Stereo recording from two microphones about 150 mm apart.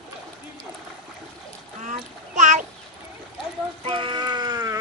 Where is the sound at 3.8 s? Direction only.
35° right (ahead or behind).